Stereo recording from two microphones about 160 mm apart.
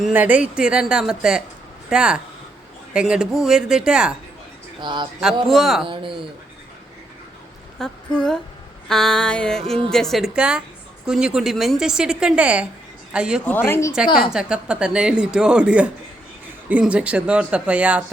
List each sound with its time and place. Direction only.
0.0 s a woman's voice: 10° right (ahead or behind)
4.8 s speech: 30° right (ahead or behind)
5.5 s a woman's voice: centre (ahead or behind)
5.8 s speech: 30° right (ahead or behind)
7.8 s a woman's voice: 5° left (ahead or behind)
13.5 s speech: 15° left (ahead or behind)
14.3 s a woman's voice: 5° right (ahead or behind)